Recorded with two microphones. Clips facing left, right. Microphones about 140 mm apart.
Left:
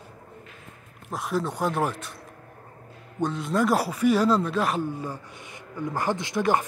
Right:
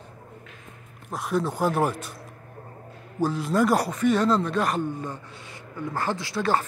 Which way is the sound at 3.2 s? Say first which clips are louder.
Right 2 dB; centre (ahead or behind).